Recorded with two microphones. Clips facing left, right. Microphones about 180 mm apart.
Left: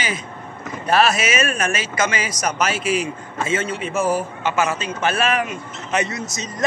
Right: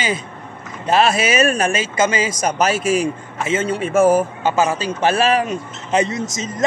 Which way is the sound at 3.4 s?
25° right (ahead or behind).